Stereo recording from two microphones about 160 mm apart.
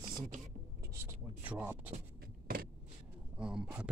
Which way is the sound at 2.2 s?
70° right (ahead or behind).